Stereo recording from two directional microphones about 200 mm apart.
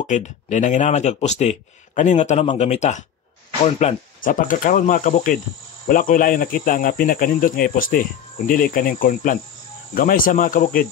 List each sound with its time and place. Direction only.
0.0 s speech: 35° left (ahead or behind)